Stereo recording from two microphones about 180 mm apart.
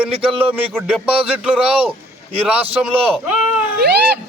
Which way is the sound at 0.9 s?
5° right (ahead or behind).